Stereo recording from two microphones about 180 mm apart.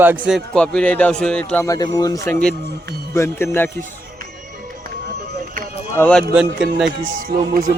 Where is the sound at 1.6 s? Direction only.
20° left (ahead or behind).